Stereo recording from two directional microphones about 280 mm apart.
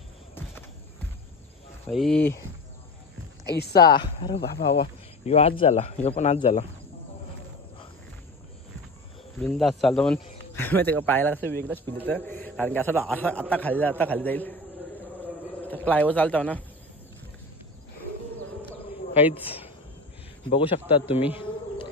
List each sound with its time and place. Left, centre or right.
0.3 s music: centre
1.9 s a man's voice: centre
3.5 s speech: left
3.9 s speech: centre
4.4 s speech: left
4.7 s speech: left
9.4 s a man's voice: centre
15.6 s speech: centre
19.1 s a woman's voice: centre
21.3 s insect: centre